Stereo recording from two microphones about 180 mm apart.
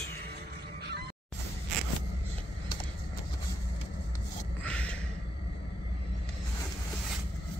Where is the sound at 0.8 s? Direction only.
65° right (ahead or behind).